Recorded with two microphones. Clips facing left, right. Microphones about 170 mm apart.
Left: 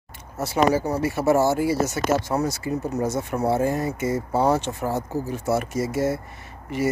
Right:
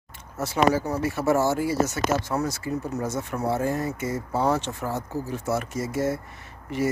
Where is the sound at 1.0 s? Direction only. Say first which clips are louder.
Left 3 dB; 10° left (ahead or behind).